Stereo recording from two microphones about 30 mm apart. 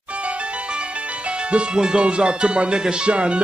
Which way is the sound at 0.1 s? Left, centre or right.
Right.